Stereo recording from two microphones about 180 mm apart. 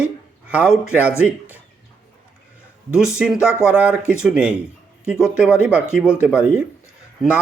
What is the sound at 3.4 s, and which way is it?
A man's voice, 5° right (ahead or behind).